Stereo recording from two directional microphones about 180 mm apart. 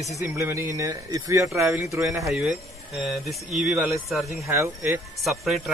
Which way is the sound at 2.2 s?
5° right (ahead or behind).